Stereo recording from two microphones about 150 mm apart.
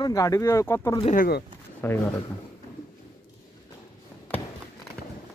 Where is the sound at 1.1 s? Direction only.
65° left (ahead or behind).